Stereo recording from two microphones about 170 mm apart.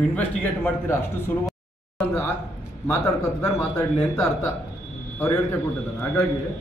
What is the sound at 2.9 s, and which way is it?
A man's voice, 20° left (ahead or behind).